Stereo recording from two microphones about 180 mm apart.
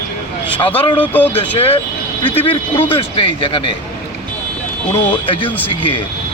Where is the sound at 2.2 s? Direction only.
30° left (ahead or behind).